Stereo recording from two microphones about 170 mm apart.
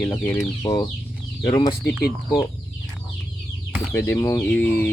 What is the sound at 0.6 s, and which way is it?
Speech, 25° left (ahead or behind).